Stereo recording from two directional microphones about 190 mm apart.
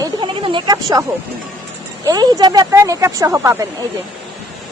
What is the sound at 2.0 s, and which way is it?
Speech, 20° right (ahead or behind).